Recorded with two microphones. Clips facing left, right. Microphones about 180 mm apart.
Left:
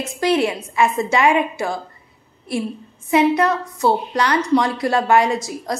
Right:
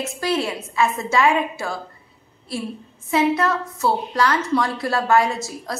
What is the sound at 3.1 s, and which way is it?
A woman's voice, 15° left (ahead or behind).